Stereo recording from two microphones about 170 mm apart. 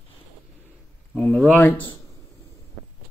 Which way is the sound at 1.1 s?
5° left (ahead or behind).